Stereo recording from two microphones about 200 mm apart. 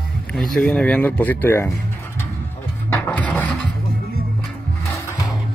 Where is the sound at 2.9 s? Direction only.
5° left (ahead or behind).